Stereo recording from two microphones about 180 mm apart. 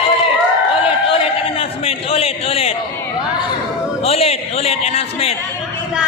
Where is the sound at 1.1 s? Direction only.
30° left (ahead or behind).